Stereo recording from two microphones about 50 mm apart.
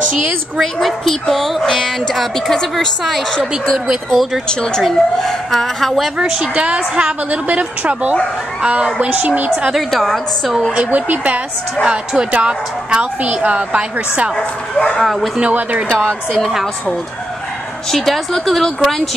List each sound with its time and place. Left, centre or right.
0.6 s speech: centre
1.6 s a woman's voice: centre
3.7 s speech: centre
4.5 s a woman's voice: centre
6.2 s speech: centre
6.5 s a woman's voice: right
7.2 s a woman's voice: right
9.0 s a woman's voice: right
9.7 s speech: centre
10.7 s a woman's voice: right
14.8 s speech: left
16.0 s a woman's voice: centre
17.9 s speech: centre